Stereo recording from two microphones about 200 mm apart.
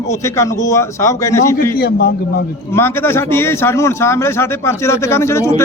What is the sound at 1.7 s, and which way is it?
Speech, 50° left (ahead or behind).